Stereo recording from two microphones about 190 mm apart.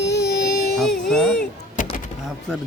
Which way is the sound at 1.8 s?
40° left (ahead or behind).